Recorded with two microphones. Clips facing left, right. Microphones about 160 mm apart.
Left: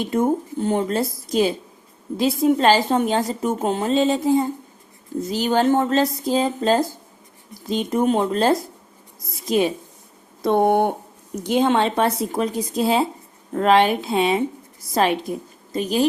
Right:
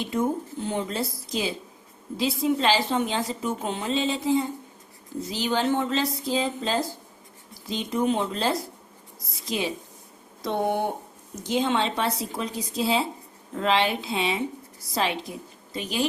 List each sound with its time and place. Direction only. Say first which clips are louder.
0.0 s a woman's voice: left 6 dB; 50° left (ahead or behind)